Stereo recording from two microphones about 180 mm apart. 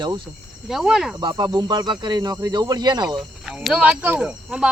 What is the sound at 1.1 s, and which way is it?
Speech, 25° right (ahead or behind).